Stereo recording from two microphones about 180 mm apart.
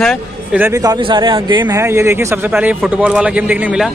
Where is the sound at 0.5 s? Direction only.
15° right (ahead or behind).